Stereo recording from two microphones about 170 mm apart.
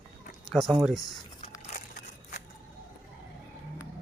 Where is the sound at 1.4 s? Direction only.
45° left (ahead or behind).